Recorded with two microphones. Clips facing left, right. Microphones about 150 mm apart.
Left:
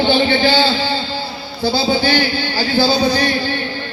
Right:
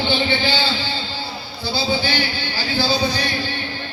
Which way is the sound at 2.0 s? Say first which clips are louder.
Left 7 dB; 45° left (ahead or behind).